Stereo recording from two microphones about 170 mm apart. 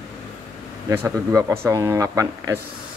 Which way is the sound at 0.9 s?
15° right (ahead or behind).